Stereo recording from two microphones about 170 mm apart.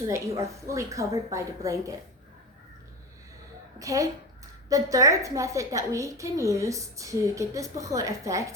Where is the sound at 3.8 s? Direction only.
20° right (ahead or behind).